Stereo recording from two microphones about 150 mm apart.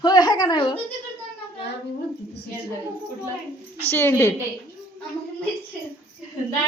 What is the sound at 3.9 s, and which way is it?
Speech, 15° left (ahead or behind).